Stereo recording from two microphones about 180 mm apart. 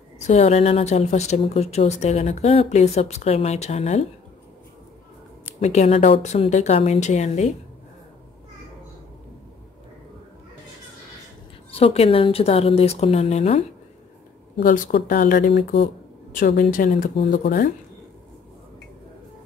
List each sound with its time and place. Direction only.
0.3 s speech: 35° left (ahead or behind)
5.6 s speech: 40° left (ahead or behind)
11.7 s speech: 35° left (ahead or behind)
14.6 s speech: 50° left (ahead or behind); by 15.9 s 65° left (ahead or behind)
16.3 s speech: 50° left (ahead or behind)